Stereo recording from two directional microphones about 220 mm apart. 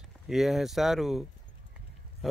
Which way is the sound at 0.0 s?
Centre (ahead or behind).